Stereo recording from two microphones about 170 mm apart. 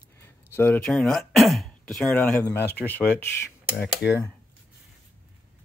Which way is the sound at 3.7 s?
Centre (ahead or behind).